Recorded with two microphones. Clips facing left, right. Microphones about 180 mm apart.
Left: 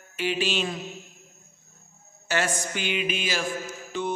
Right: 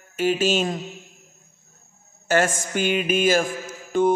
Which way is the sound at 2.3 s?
50° right (ahead or behind).